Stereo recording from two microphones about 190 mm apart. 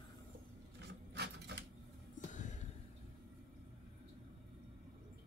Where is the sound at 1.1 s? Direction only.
60° right (ahead or behind).